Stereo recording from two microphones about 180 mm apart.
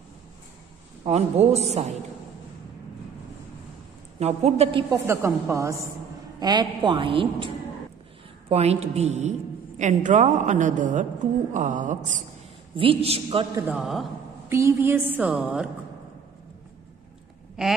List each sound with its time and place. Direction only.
1.0 s a woman's voice: 35° right (ahead or behind)
4.2 s a woman's voice: 35° right (ahead or behind)
4.9 s a woman's voice: 15° right (ahead or behind); by 11.1 s 45° right (ahead or behind)
11.5 s a sound: 45° right (ahead or behind)
12.7 s a woman's voice: 30° right (ahead or behind)
13.6 s a man's voice: 5° right (ahead or behind)
14.5 s a woman's voice: 15° right (ahead or behind)